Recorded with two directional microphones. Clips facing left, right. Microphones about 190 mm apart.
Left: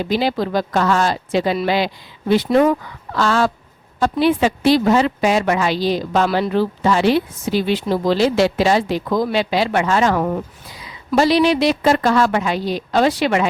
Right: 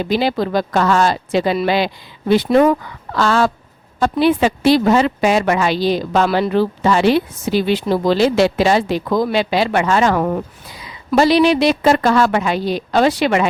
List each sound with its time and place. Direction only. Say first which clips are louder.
0.1 s a woman's voice: right 2 dB; 65° right (ahead or behind)